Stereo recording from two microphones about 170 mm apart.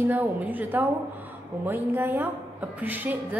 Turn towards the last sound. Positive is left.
turn(degrees=-10)  # may be behind; listen again after turning